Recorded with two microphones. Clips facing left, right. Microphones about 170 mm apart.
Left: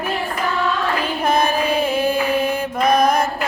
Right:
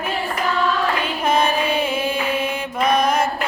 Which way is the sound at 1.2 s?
35° left (ahead or behind).